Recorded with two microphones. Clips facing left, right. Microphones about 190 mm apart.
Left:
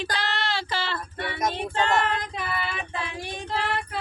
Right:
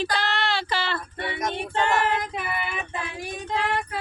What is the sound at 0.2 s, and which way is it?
Child singing, 60° right (ahead or behind).